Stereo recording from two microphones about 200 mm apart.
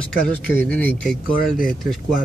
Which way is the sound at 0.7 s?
10° left (ahead or behind).